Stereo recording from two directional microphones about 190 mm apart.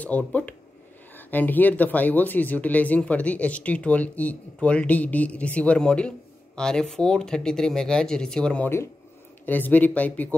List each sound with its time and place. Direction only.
0.0 s speech: 10° left (ahead or behind)